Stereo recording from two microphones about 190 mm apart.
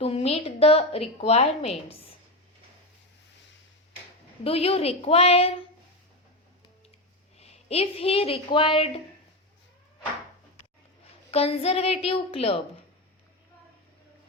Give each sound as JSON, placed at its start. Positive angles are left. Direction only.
{"t": 0.0, "sound": "a woman's voice", "side_deg": 30}
{"t": 4.4, "sound": "a woman's voice", "side_deg": 30}
{"t": 7.3, "sound": "a woman's voice", "side_deg": 35}
{"t": 11.3, "sound": "a woman's voice", "side_deg": 30}